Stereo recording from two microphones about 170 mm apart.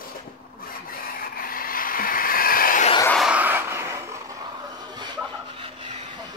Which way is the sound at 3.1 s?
5° right (ahead or behind).